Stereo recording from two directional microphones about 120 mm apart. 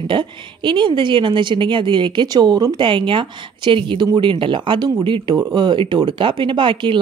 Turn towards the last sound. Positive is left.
turn(degrees=-40)  # may be behind; listen again after turning